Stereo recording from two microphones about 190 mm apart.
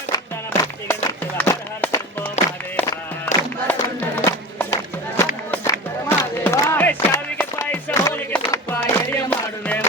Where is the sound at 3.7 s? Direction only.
10° left (ahead or behind).